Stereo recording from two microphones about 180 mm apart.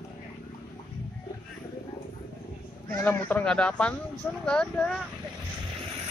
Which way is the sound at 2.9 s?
10° left (ahead or behind).